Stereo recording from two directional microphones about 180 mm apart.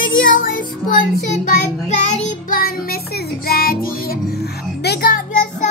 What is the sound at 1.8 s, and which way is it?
Music, 40° left (ahead or behind).